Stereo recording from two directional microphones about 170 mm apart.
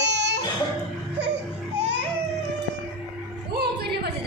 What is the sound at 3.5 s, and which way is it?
Music, 65° right (ahead or behind).